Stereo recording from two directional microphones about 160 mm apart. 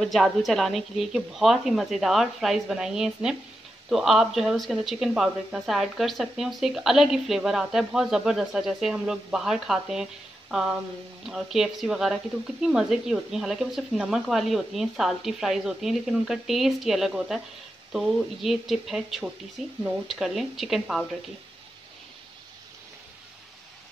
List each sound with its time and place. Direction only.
0.0 s speech: centre (ahead or behind)
11.2 s speech: 5° right (ahead or behind)